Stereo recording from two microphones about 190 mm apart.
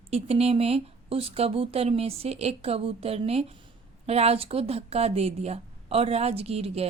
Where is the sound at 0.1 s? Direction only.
35° right (ahead or behind).